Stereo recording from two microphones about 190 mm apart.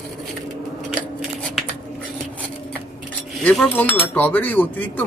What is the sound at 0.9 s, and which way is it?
Scissors, 5° left (ahead or behind).